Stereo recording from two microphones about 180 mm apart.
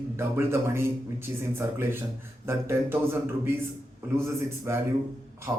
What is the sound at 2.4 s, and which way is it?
Speech, 15° right (ahead or behind).